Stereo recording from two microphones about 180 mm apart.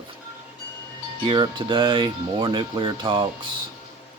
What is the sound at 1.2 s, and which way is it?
A man's voice, 25° right (ahead or behind).